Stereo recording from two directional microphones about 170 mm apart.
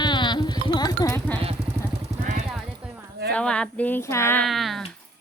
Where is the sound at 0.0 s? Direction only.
25° left (ahead or behind).